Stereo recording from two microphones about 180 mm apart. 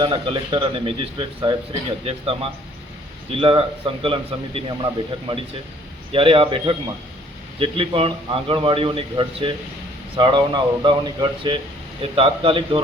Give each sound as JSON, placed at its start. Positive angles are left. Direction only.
{"t": 0.0, "sound": "a man's voice", "side_deg": -30}